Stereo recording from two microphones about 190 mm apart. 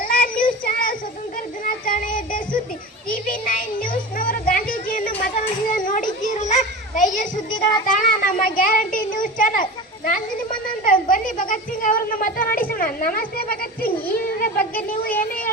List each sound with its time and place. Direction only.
0.0 s child singing: 45° left (ahead or behind)
3.1 s music: 45° left (ahead or behind)
5.7 s children playing: 45° left (ahead or behind)
7.9 s child singing: 45° left (ahead or behind)